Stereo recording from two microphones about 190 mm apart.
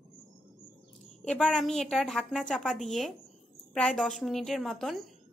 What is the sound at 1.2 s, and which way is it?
A woman's voice, 5° left (ahead or behind).